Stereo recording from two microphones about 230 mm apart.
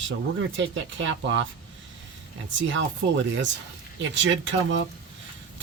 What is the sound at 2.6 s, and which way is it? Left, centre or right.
Speech, right.